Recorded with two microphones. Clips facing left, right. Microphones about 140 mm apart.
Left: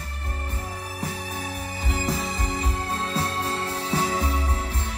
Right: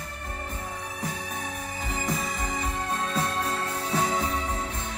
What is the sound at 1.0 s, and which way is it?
Music, 30° left (ahead or behind).